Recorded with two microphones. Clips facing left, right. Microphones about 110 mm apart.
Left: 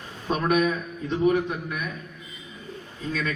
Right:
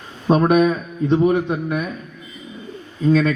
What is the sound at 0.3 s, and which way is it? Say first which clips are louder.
A man's voice: right 8 dB; 35° right (ahead or behind).